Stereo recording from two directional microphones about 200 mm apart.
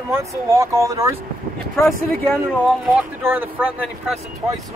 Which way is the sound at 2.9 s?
10° right (ahead or behind).